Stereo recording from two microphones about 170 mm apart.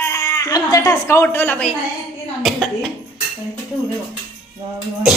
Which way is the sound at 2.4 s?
Centre (ahead or behind).